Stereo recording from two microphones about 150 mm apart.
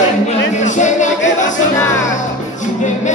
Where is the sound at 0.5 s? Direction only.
55° left (ahead or behind).